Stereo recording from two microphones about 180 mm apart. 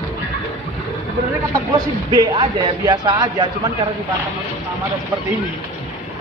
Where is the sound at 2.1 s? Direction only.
25° right (ahead or behind).